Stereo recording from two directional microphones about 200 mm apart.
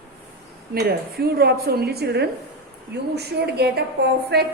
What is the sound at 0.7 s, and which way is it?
A woman's voice, 50° right (ahead or behind).